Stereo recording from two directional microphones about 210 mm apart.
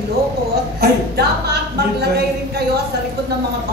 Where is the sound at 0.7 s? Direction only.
50° right (ahead or behind).